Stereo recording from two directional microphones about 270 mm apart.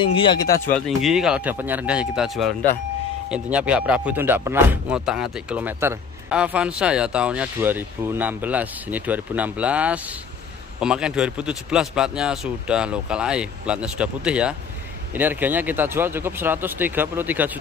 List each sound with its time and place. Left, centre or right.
0.0 s speech: centre
0.7 s speech: centre